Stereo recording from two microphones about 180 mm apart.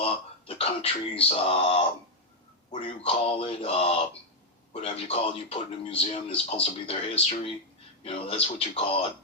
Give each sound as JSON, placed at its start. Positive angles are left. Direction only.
{"t": 0.0, "sound": "speech", "side_deg": 35}
{"t": 2.8, "sound": "speech", "side_deg": 35}